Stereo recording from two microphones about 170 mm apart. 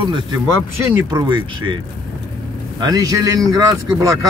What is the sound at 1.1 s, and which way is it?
Speech, 25° right (ahead or behind).